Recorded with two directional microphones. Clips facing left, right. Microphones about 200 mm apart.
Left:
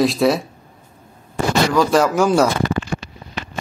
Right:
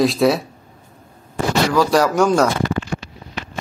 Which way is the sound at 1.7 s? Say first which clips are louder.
Even; centre (ahead or behind).